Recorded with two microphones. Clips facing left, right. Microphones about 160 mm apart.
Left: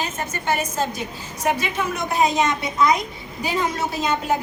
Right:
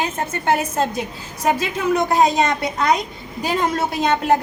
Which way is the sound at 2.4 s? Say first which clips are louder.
Right 1 dB; 65° right (ahead or behind).